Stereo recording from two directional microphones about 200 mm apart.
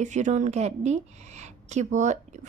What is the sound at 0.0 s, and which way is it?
A woman's voice, 35° right (ahead or behind).